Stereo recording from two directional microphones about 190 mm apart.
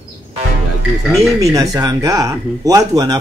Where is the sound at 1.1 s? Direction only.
Centre (ahead or behind).